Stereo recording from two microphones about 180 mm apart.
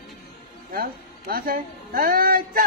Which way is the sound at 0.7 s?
55° right (ahead or behind).